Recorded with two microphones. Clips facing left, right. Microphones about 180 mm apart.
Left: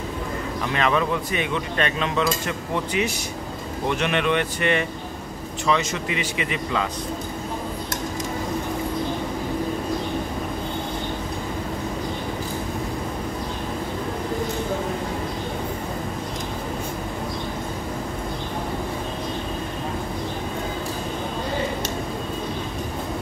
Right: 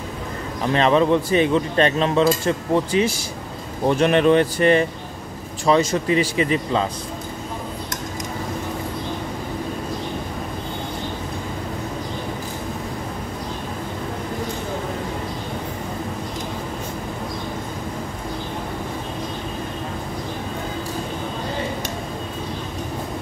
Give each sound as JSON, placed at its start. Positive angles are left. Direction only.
{"t": 0.7, "sound": "speech", "side_deg": -30}